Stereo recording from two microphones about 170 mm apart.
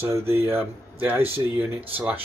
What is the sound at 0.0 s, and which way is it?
Speech, 15° right (ahead or behind).